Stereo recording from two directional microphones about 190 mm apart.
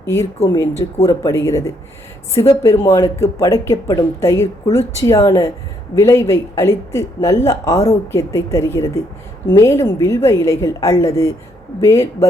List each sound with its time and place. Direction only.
0.0 s speech: 15° left (ahead or behind)